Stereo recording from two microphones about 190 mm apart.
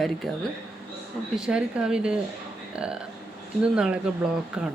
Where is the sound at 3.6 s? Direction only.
5° right (ahead or behind).